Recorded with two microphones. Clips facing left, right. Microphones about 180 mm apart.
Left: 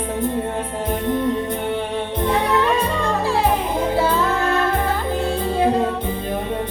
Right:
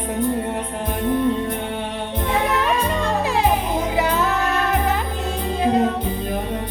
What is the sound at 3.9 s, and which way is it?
Music, 15° right (ahead or behind).